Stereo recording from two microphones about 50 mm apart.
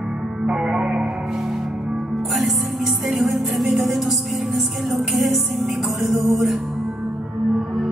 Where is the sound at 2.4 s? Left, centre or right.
Centre.